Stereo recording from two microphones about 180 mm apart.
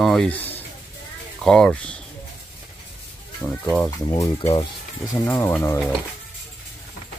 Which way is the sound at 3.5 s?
5° left (ahead or behind).